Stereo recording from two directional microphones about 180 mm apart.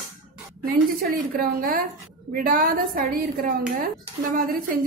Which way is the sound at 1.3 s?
55° right (ahead or behind).